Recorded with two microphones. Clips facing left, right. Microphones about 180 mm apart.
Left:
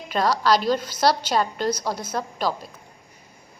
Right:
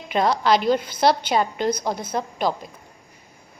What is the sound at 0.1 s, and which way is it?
A woman's voice, 20° right (ahead or behind).